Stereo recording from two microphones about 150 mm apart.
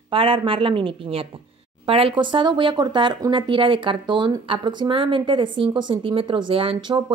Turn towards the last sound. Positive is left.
turn(degrees=-30)  # may be behind; listen again after turning